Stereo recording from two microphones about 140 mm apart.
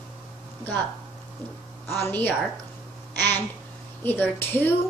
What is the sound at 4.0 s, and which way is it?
Speech, 15° left (ahead or behind).